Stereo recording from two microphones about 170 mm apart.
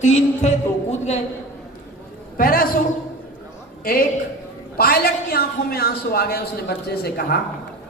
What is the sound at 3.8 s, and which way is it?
A woman's voice, 60° left (ahead or behind).